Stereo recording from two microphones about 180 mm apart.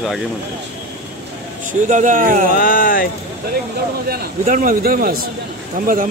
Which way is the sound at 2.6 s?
50° left (ahead or behind).